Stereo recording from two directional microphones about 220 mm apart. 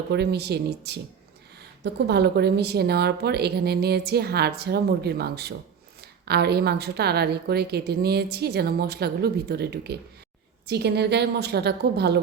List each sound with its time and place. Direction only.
0.1 s speech: 50° right (ahead or behind)